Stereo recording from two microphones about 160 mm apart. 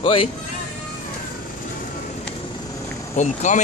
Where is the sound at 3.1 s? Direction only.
50° left (ahead or behind).